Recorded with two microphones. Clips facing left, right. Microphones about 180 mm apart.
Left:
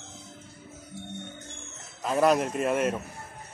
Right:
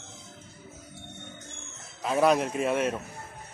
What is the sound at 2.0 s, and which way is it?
Speech, centre (ahead or behind).